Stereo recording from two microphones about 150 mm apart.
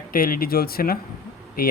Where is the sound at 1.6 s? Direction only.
75° left (ahead or behind).